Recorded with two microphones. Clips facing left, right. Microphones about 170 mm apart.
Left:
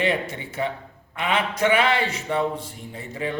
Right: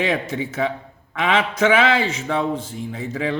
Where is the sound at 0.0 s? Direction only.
90° right.